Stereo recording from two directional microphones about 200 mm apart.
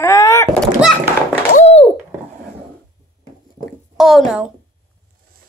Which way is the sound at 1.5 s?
35° left (ahead or behind).